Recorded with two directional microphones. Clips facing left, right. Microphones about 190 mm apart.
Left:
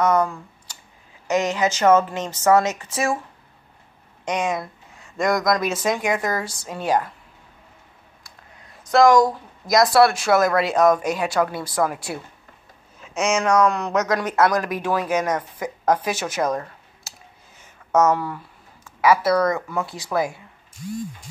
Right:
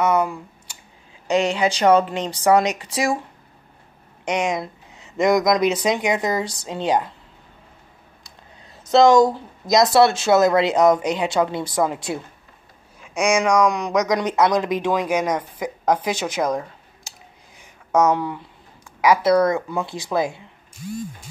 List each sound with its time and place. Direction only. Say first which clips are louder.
0.0 s speech: even; 10° right (ahead or behind)
1.5 s speech: even; 15° right (ahead or behind)
4.2 s speech: right 2 dB; 10° right (ahead or behind)
8.8 s speech: right 2 dB; 25° right (ahead or behind)
17.6 s a sound: even; 15° right (ahead or behind)
18.9 s speech: right 1 dB; 15° right (ahead or behind)